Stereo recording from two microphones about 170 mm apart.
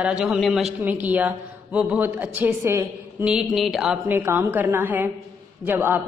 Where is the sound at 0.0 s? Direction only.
5° right (ahead or behind).